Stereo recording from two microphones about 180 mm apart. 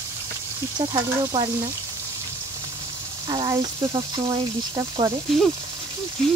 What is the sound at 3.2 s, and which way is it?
Speech, 25° right (ahead or behind).